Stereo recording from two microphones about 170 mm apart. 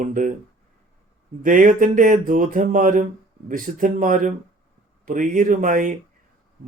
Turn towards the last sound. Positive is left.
turn(degrees=-50)  # may be behind; listen again after turning